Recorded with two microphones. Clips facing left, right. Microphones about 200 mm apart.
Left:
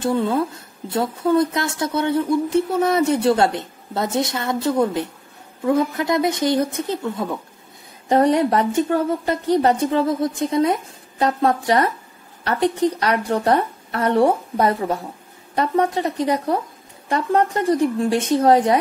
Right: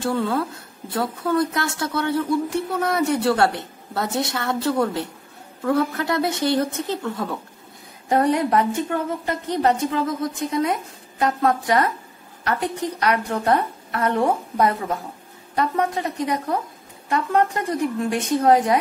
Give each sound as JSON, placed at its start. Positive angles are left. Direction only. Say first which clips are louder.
{"t": 0.0, "sound": "a woman's voice", "louder": "left 3 dB", "side_deg": 20}
{"t": 8.1, "sound": "speech", "louder": "left 3 dB", "side_deg": 30}